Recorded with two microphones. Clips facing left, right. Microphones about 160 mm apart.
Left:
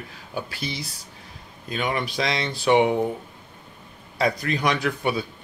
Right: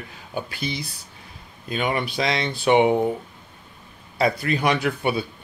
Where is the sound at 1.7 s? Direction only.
5° right (ahead or behind).